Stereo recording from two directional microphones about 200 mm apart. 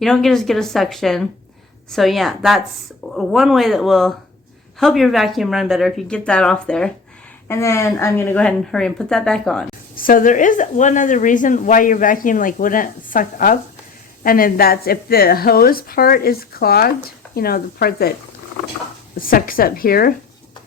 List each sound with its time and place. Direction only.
0.0 s speech: centre (ahead or behind)
9.9 s a woman's voice: 45° left (ahead or behind)
19.2 s a woman's voice: 45° left (ahead or behind)